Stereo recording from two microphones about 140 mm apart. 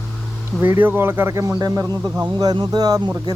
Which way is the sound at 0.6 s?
15° right (ahead or behind).